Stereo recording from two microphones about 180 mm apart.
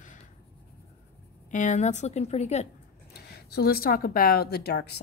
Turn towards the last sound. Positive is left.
turn(degrees=65)  # may be behind; listen again after turning